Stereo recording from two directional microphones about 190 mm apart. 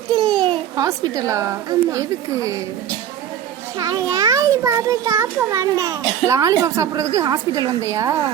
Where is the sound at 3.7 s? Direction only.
20° right (ahead or behind).